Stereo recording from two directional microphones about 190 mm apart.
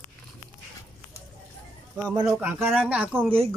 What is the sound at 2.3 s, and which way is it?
Speech, 10° right (ahead or behind).